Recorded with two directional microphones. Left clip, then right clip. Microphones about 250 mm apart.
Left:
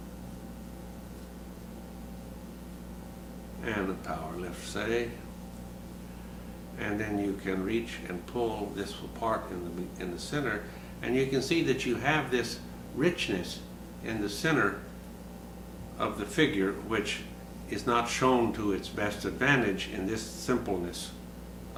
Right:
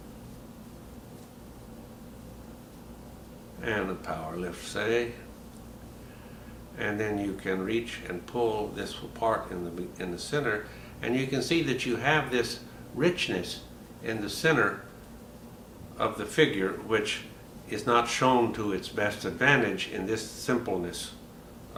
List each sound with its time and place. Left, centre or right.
3.6 s speech: centre
6.7 s speech: centre
16.0 s speech: centre